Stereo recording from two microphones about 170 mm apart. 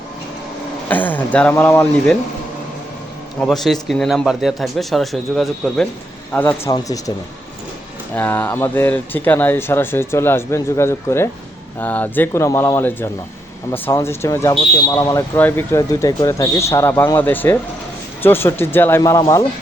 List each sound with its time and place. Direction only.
0.9 s speech: 10° left (ahead or behind)
3.4 s speech: centre (ahead or behind); by 7.0 s 20° left (ahead or behind)
8.1 s speech: 10° left (ahead or behind)